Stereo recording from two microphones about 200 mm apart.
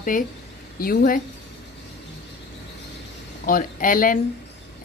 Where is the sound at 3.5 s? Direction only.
45° left (ahead or behind).